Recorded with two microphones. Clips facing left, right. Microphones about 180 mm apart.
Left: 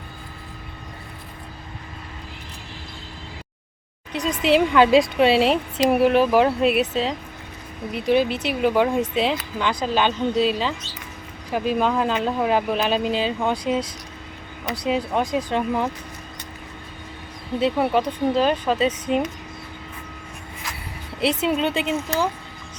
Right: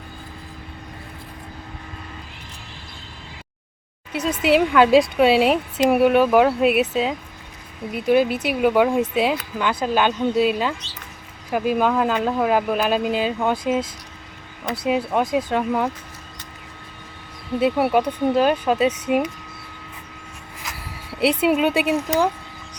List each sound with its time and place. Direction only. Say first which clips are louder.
4.1 s speech: right 1 dB; 5° right (ahead or behind)
8.2 s speech: right 2 dB; 55° right (ahead or behind)
8.6 s speech: right 2 dB; 5° right (ahead or behind)
11.5 s speech: right 2 dB; 10° right (ahead or behind)
14.8 s speech: right 2 dB; 5° right (ahead or behind)
17.6 s speech: right 2 dB; 5° right (ahead or behind)
21.2 s speech: right 3 dB; 10° right (ahead or behind)